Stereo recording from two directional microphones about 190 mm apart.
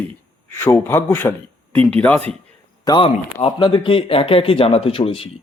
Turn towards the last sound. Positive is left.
turn(degrees=30)  # may be behind; listen again after turning